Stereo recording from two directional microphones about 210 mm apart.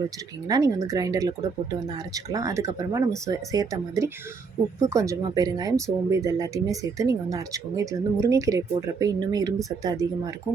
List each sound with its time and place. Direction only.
0.4 s speech: 15° right (ahead or behind)